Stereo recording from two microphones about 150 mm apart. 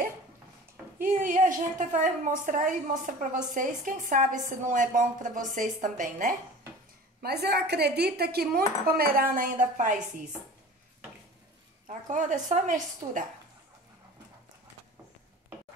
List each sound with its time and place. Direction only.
1.0 s a woman's voice: 60° right (ahead or behind)
7.2 s speech: 90° right; by 9.9 s 60° right (ahead or behind)
12.1 s a woman's voice: 55° right (ahead or behind)